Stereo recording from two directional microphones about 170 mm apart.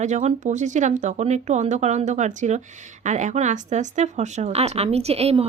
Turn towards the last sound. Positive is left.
turn(degrees=-35)  # may be behind; listen again after turning